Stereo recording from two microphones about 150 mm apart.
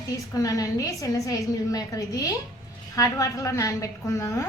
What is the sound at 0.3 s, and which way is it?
A woman's voice, 25° left (ahead or behind).